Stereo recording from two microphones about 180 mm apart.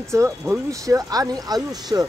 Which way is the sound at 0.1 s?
15° right (ahead or behind).